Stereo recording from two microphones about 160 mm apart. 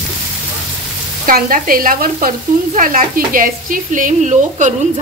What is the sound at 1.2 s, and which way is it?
Frying, 60° right (ahead or behind).